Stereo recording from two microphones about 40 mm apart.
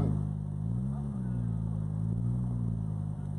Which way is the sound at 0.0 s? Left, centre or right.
Centre.